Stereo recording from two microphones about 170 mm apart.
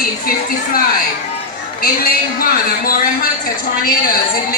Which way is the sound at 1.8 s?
60° left (ahead or behind).